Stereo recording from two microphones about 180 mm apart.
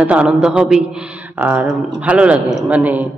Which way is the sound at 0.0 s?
5° right (ahead or behind).